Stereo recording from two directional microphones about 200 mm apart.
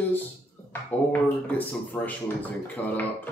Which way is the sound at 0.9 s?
10° left (ahead or behind).